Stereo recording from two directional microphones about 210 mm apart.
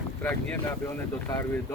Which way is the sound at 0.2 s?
5° left (ahead or behind).